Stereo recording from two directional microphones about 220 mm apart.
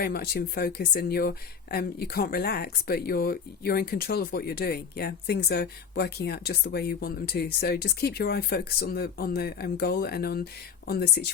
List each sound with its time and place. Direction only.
0.0 s speech: 45° left (ahead or behind)